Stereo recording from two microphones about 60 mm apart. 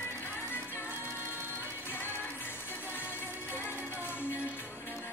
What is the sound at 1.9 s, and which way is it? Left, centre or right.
Music, left.